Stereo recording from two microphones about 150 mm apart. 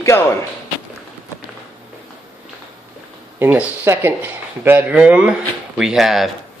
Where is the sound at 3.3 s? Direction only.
15° right (ahead or behind).